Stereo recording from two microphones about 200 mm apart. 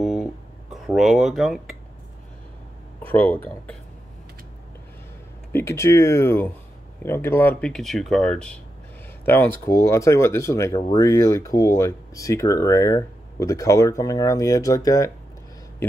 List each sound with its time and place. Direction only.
0.0 s guitar: centre (ahead or behind)
3.0 s speech: 10° left (ahead or behind)
5.5 s speech: 15° left (ahead or behind)